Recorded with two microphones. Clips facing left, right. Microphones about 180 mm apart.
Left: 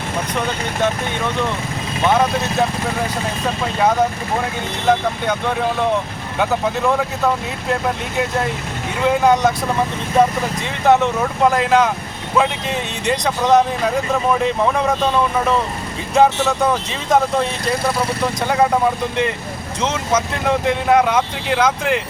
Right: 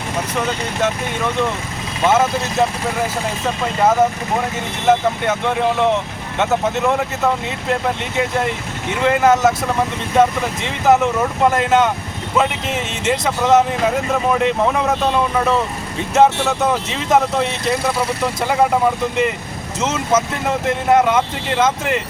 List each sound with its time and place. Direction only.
2.0 s speech: 5° right (ahead or behind)
4.9 s speech: 5° right (ahead or behind)
9.0 s speech: centre (ahead or behind)
10.8 s speech: centre (ahead or behind)
16.1 s speech: centre (ahead or behind)